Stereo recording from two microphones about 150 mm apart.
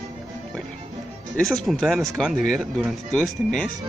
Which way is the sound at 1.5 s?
Centre (ahead or behind).